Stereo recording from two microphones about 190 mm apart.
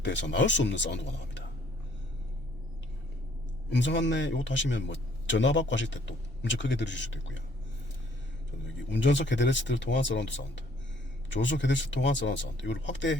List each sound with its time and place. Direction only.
0.0 s a man's voice: 70° left (ahead or behind)
3.7 s a man's voice: 70° left (ahead or behind)
8.9 s a man's voice: 70° left (ahead or behind)